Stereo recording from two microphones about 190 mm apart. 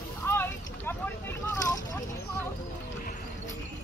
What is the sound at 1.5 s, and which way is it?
Vehicle, 15° left (ahead or behind).